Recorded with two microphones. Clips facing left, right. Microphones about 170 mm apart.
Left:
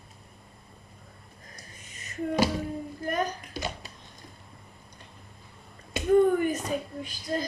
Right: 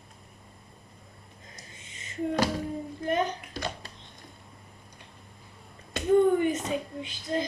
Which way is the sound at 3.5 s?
10° left (ahead or behind).